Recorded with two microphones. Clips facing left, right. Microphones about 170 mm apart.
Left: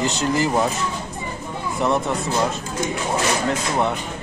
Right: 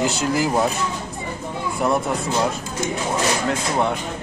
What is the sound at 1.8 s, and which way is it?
Speech, 5° right (ahead or behind).